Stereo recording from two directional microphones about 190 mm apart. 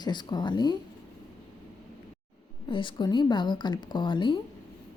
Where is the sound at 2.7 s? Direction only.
25° left (ahead or behind).